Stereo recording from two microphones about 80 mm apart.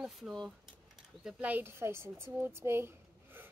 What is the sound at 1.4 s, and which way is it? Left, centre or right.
A woman's voice, right.